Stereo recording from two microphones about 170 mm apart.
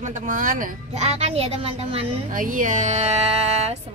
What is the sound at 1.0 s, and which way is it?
Speech, 35° right (ahead or behind).